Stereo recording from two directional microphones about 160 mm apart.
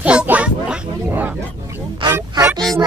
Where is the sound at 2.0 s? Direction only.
25° right (ahead or behind).